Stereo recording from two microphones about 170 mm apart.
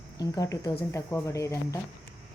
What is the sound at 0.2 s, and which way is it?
Speech, 20° left (ahead or behind).